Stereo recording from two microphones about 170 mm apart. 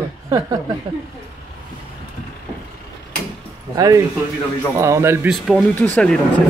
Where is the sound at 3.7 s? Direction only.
20° right (ahead or behind).